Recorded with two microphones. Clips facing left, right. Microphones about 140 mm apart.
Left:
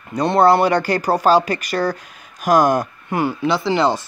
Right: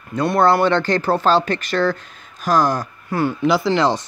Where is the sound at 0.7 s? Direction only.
10° left (ahead or behind).